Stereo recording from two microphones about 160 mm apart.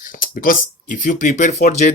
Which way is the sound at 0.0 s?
60° left (ahead or behind).